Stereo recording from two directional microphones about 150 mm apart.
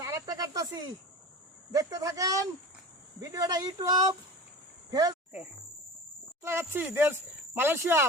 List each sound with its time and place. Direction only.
0.0 s snake: 25° right (ahead or behind)
1.7 s speech: 20° right (ahead or behind)
6.4 s speech: 15° right (ahead or behind)